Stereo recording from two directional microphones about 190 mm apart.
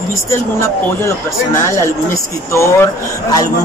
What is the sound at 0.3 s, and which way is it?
Speech, 15° left (ahead or behind).